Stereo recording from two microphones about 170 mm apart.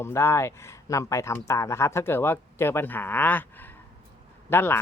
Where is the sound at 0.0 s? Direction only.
15° left (ahead or behind).